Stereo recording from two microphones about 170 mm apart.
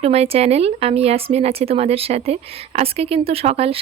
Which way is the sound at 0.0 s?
40° right (ahead or behind).